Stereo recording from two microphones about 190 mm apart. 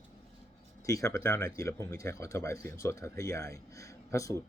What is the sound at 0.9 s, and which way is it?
Speech, 15° left (ahead or behind).